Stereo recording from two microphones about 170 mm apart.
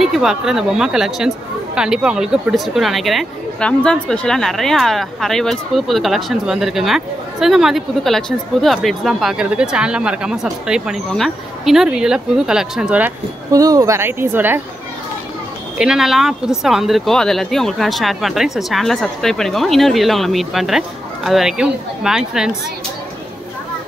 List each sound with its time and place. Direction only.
0.0 s speech: centre (ahead or behind)
13.5 s a woman's voice: 20° right (ahead or behind)
15.8 s speech: 5° right (ahead or behind)